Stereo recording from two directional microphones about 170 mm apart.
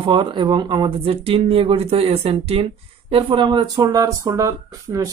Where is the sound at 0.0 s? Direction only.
30° right (ahead or behind).